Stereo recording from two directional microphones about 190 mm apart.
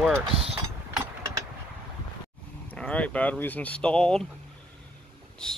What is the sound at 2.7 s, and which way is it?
Speech, 5° left (ahead or behind).